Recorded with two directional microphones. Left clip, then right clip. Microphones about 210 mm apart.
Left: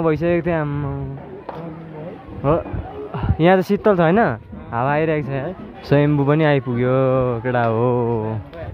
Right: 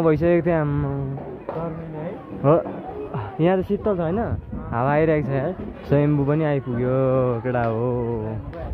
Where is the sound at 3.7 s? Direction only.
35° left (ahead or behind).